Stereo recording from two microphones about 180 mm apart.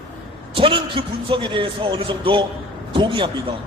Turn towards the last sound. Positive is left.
turn(degrees=-30)  # may be behind; listen again after turning